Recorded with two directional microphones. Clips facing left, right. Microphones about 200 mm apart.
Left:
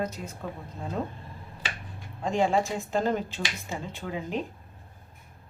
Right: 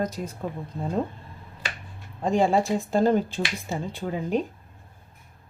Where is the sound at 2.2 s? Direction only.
35° right (ahead or behind).